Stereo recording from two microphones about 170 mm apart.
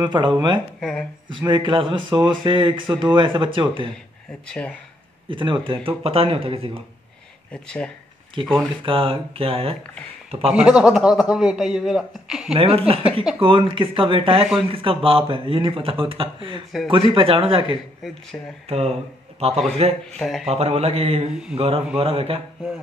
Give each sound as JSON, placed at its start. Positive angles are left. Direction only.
{"t": 0.0, "sound": "speech", "side_deg": -25}
{"t": 0.7, "sound": "speech", "side_deg": 5}
{"t": 1.3, "sound": "speech", "side_deg": -30}
{"t": 4.5, "sound": "speech", "side_deg": 5}
{"t": 5.3, "sound": "speech", "side_deg": -30}
{"t": 7.5, "sound": "speech", "side_deg": 5}
{"t": 8.8, "sound": "speech", "side_deg": -30}
{"t": 10.5, "sound": "speech", "side_deg": -5}
{"t": 12.5, "sound": "speech", "side_deg": -35}
{"t": 18.3, "sound": "speech", "side_deg": 10}
{"t": 18.7, "sound": "speech", "side_deg": -35}
{"t": 20.2, "sound": "speech", "side_deg": 0}
{"t": 20.4, "sound": "speech", "side_deg": -35}